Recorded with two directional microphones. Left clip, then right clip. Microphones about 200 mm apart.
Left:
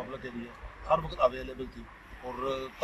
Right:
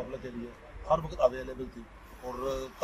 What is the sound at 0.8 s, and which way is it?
Speech, 5° right (ahead or behind).